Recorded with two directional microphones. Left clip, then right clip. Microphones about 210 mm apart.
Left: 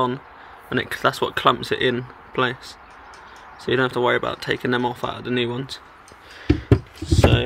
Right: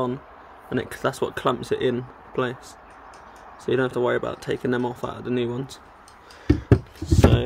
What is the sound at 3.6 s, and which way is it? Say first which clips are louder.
Speech: left 3 dB; 5° right (ahead or behind).